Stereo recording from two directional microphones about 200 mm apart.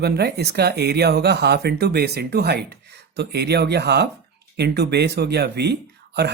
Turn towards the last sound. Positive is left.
turn(degrees=-55)  # may be behind; listen again after turning